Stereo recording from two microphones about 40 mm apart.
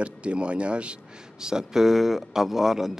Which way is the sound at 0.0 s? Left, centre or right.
Right.